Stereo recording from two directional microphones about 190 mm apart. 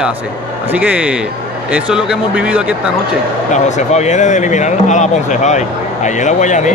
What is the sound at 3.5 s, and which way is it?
Speech, 40° left (ahead or behind).